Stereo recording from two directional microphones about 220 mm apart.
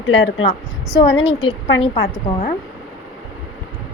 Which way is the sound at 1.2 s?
25° left (ahead or behind).